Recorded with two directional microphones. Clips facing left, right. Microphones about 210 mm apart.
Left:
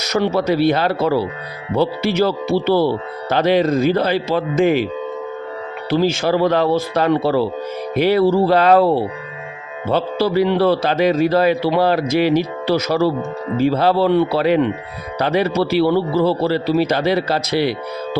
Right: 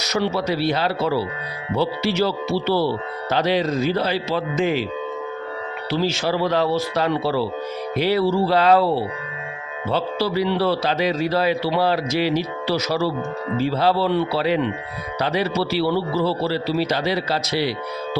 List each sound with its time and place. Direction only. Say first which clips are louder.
0.0 s a man's voice: left 4 dB; 50° left (ahead or behind)
5.9 s a man's voice: left 5 dB; 50° left (ahead or behind)